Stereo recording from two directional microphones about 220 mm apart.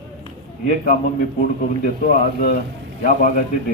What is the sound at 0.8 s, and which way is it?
A man's voice, 40° left (ahead or behind).